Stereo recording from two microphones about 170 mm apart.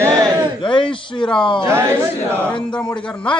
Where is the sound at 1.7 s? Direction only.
15° right (ahead or behind).